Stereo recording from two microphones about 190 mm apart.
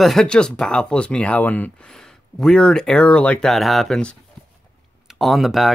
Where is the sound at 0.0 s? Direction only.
Centre (ahead or behind).